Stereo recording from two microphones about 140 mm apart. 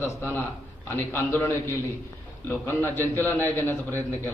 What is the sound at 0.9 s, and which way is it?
A man's voice, 15° left (ahead or behind).